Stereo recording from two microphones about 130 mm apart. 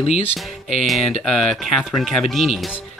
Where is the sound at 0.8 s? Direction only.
Centre (ahead or behind).